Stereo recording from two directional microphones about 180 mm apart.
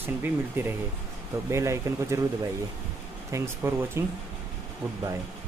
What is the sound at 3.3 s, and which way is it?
Speech, 15° right (ahead or behind).